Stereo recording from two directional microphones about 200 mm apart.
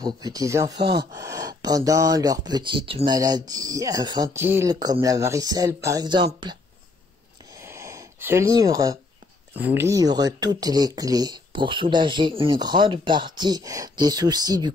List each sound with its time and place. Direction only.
0.0 s speech: 20° right (ahead or behind)
7.6 s a sound: 15° right (ahead or behind)
9.6 s speech: 10° right (ahead or behind)